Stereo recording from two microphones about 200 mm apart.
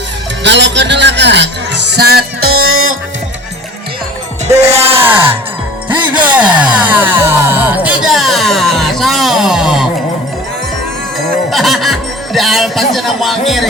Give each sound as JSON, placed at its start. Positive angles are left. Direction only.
{"t": 0.4, "sound": "speech", "side_deg": -60}
{"t": 2.6, "sound": "music", "side_deg": -90}
{"t": 4.7, "sound": "a sound", "side_deg": -30}
{"t": 5.0, "sound": "a sound", "side_deg": -10}
{"t": 6.7, "sound": "music", "side_deg": -10}
{"t": 11.5, "sound": "speech", "side_deg": 0}